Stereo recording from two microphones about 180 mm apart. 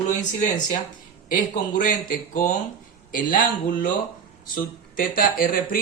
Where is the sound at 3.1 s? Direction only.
50° left (ahead or behind).